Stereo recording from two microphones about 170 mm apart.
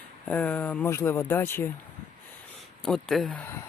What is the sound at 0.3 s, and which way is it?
Speech, 10° left (ahead or behind).